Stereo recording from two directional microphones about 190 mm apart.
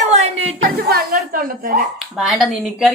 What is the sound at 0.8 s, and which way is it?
A woman's voice, 55° right (ahead or behind).